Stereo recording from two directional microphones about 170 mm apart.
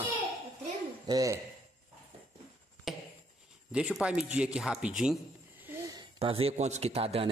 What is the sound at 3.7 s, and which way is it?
Speech, 5° right (ahead or behind).